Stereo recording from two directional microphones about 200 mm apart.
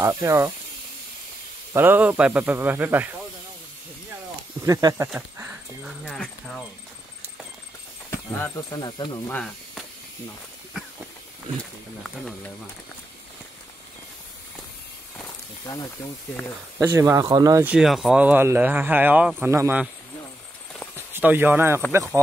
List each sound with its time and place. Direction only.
0.0 s speech: 15° right (ahead or behind)
1.7 s speech: 10° right (ahead or behind)
4.6 s speech: 15° right (ahead or behind); by 6.6 s centre (ahead or behind)
8.1 s speech: 15° left (ahead or behind)
9.3 s speech: 5° left (ahead or behind)
15.6 s speech: 20° left (ahead or behind)
16.8 s speech: 15° right (ahead or behind)
17.7 s speech: centre (ahead or behind)
20.9 s speech: 10° right (ahead or behind)